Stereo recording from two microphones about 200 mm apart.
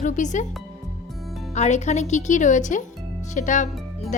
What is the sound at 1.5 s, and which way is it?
Speech, 35° left (ahead or behind).